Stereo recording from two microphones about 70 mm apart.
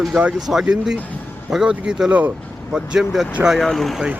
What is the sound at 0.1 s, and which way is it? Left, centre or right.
Speech, centre.